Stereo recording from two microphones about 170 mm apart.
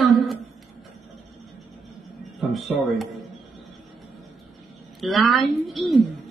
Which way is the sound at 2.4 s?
Centre (ahead or behind).